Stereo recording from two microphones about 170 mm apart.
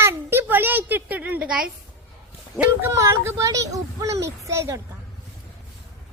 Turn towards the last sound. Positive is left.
turn(degrees=-15)  # may be behind; listen again after turning